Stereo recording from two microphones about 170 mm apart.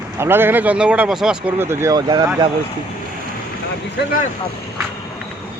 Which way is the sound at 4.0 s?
80° left.